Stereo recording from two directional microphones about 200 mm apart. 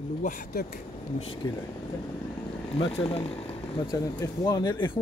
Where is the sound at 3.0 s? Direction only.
25° left (ahead or behind).